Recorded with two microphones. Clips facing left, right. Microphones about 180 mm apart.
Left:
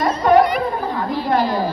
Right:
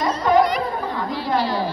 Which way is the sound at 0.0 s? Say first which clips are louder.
Left 3 dB; 60° left (ahead or behind).